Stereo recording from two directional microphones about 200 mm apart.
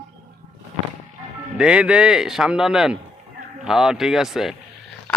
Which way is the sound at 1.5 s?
5° right (ahead or behind).